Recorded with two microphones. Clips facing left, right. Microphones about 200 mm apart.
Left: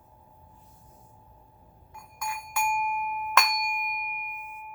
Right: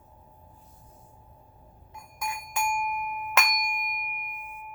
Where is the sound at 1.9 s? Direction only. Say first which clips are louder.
Right 1 dB; 20° right (ahead or behind).